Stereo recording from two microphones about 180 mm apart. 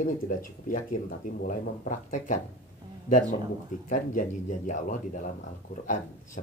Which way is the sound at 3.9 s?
45° left (ahead or behind).